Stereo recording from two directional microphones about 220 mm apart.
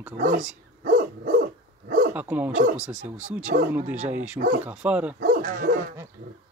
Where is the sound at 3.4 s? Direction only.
35° right (ahead or behind).